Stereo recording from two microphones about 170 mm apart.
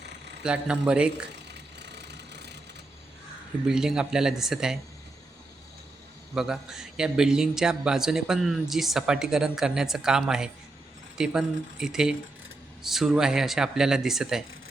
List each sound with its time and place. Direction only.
0.4 s a man's voice: 5° right (ahead or behind)
1.5 s vehicle: 85° right
3.7 s a man's voice: 5° right (ahead or behind)
6.3 s a man's voice: 5° right (ahead or behind)